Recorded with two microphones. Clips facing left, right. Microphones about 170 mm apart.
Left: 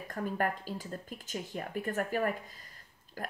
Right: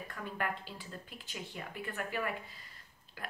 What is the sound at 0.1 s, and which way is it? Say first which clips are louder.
Speech: left 7 dB; 40° left (ahead or behind).